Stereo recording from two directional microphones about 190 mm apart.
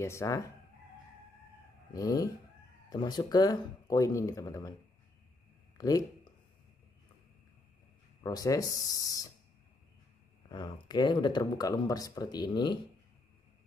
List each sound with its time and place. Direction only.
0.0 s speech: 15° left (ahead or behind)
2.0 s speech: 15° left (ahead or behind)
5.8 s speech: 20° left (ahead or behind)
8.2 s speech: 20° left (ahead or behind)
10.5 s speech: 25° left (ahead or behind)